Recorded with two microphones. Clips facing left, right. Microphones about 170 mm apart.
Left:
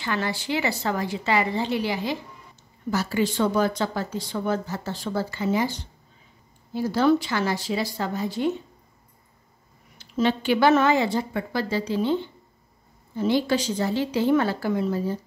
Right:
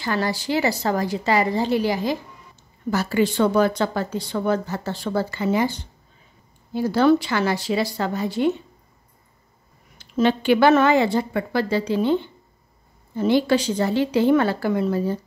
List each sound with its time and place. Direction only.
0.0 s a woman's voice: 40° right (ahead or behind)
2.9 s speech: 60° right (ahead or behind)
9.9 s speech: 60° right (ahead or behind)